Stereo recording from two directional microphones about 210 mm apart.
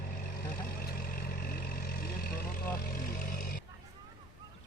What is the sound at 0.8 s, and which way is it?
Vehicle, 45° left (ahead or behind).